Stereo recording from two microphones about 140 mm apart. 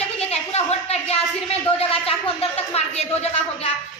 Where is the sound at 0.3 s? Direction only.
45° left (ahead or behind).